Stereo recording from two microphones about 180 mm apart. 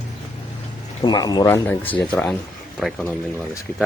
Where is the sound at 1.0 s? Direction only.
20° left (ahead or behind); by 2.9 s centre (ahead or behind).